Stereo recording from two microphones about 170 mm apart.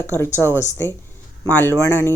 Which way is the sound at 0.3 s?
15° left (ahead or behind).